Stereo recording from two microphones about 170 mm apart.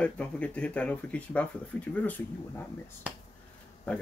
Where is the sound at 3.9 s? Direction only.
5° left (ahead or behind).